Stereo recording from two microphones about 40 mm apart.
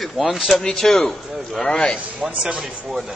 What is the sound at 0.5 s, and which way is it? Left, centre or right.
Mantra, centre.